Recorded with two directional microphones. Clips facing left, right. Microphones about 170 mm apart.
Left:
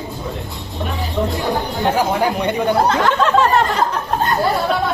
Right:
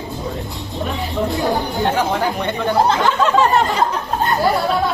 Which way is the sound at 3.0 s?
Centre (ahead or behind).